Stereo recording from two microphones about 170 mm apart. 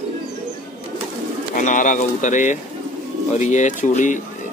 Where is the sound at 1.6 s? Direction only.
50° left (ahead or behind).